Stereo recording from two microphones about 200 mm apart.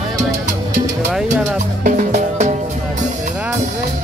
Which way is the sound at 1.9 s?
35° right (ahead or behind).